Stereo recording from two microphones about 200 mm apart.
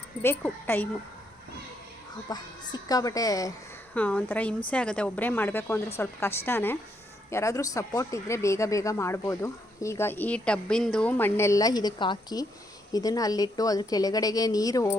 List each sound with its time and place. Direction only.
0.7 s speech: 10° left (ahead or behind)
2.3 s a woman's voice: 20° left (ahead or behind)